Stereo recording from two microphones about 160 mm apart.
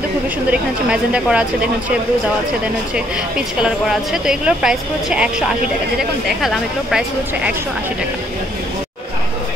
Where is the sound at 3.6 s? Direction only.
5° right (ahead or behind).